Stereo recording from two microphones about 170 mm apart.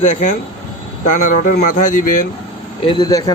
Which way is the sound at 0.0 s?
45° left (ahead or behind).